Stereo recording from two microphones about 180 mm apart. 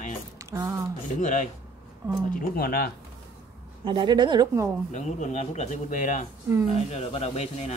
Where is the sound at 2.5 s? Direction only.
55° left (ahead or behind).